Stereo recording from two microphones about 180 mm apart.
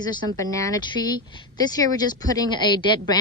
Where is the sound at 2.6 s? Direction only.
25° left (ahead or behind).